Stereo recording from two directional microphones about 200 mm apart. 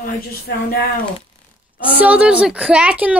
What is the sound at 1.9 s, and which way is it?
A woman's voice, 10° right (ahead or behind).